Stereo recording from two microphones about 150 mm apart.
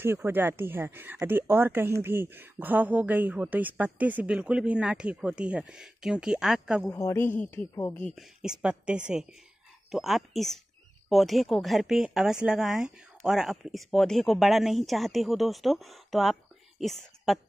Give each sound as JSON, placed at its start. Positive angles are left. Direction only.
{"t": 0.0, "sound": "speech", "side_deg": -15}
{"t": 6.8, "sound": "a woman's voice", "side_deg": 15}
{"t": 8.0, "sound": "a woman's voice", "side_deg": 0}